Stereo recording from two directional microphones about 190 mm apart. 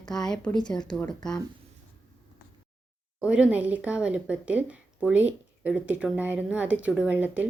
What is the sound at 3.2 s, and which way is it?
Speech, 5° right (ahead or behind).